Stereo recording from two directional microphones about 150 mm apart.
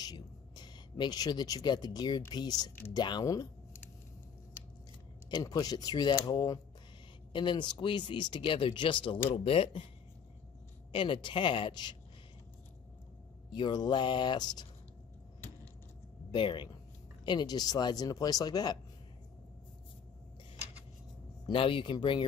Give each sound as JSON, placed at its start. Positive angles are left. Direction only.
{"t": 0.0, "sound": "speech", "side_deg": 25}
{"t": 5.3, "sound": "speech", "side_deg": 25}
{"t": 10.9, "sound": "speech", "side_deg": 35}
{"t": 13.5, "sound": "speech", "side_deg": 30}
{"t": 16.3, "sound": "speech", "side_deg": 35}
{"t": 21.5, "sound": "speech", "side_deg": 35}